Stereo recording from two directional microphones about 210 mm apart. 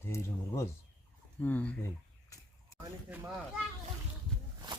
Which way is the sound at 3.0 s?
10° right (ahead or behind).